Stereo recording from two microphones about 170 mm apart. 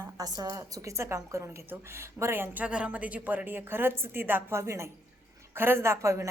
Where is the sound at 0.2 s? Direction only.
25° right (ahead or behind).